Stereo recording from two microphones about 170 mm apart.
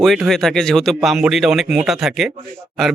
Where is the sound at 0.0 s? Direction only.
Centre (ahead or behind).